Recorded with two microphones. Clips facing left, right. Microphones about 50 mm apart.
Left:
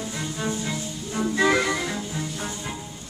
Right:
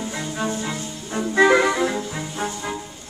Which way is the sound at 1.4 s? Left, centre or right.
Right.